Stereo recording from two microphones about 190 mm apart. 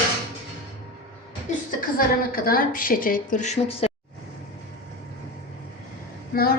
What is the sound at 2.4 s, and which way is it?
A woman's voice, 50° left (ahead or behind).